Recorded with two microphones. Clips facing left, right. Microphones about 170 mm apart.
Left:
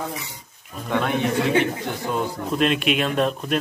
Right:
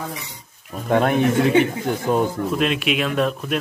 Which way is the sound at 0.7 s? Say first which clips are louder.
Right 5 dB; 50° right (ahead or behind).